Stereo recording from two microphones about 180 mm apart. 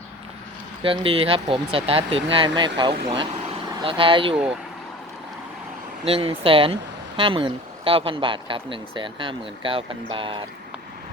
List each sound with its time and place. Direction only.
0.8 s speech: 30° right (ahead or behind)
6.1 s speech: 30° right (ahead or behind)